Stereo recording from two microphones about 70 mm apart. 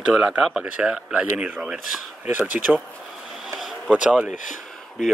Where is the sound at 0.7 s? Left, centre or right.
Centre.